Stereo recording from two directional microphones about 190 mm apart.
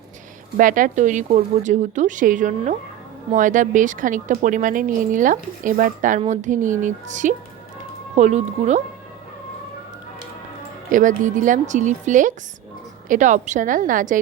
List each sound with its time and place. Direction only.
0.5 s a woman's voice: 45° right (ahead or behind)
10.9 s a woman's voice: 40° right (ahead or behind)